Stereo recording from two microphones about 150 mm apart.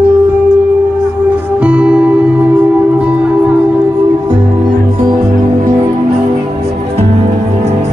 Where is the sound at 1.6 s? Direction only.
10° right (ahead or behind).